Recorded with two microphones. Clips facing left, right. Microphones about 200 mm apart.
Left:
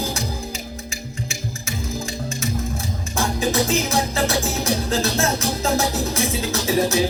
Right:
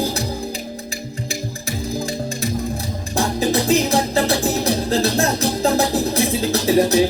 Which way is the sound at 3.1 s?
35° right (ahead or behind).